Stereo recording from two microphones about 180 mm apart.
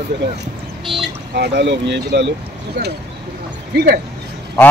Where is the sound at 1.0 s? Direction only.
70° right (ahead or behind).